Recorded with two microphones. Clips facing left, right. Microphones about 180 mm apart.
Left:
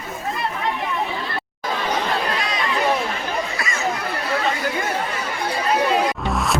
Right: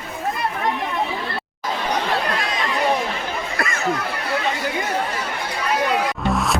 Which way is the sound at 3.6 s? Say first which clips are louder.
Right 3 dB; 55° right (ahead or behind).